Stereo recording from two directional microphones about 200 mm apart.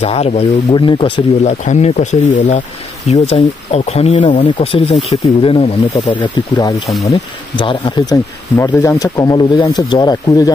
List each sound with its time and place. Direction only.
0.0 s speech: 30° left (ahead or behind)